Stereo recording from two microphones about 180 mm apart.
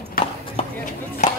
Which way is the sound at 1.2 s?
40° left (ahead or behind).